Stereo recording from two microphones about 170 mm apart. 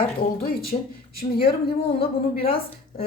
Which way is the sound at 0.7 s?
35° left (ahead or behind).